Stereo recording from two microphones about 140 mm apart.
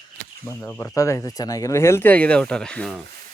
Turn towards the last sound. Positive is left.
turn(degrees=5)  # may be behind; listen again after turning